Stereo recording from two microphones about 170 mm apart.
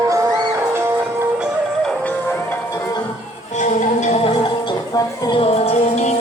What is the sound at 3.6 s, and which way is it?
Music, 45° left (ahead or behind).